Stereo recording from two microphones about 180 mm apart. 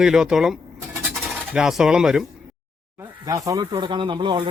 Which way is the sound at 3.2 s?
20° right (ahead or behind).